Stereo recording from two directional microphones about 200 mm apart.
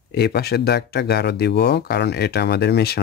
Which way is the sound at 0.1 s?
55° left (ahead or behind).